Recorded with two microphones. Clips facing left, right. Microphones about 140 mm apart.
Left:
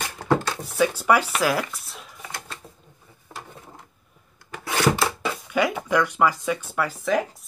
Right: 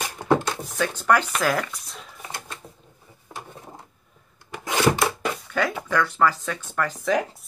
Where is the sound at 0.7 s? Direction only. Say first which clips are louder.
Left 2 dB; 10° left (ahead or behind).